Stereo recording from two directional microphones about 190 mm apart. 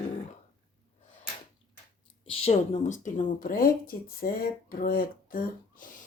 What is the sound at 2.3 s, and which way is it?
Speech, 35° left (ahead or behind).